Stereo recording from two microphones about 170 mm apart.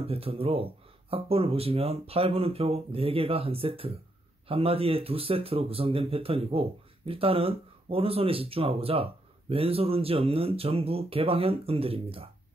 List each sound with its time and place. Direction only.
0.0 s speech: 35° right (ahead or behind)